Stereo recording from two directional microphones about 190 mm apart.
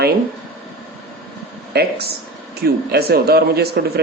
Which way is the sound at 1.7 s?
60° right (ahead or behind).